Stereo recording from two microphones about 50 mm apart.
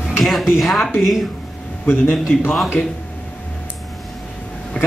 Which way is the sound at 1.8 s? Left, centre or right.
Left.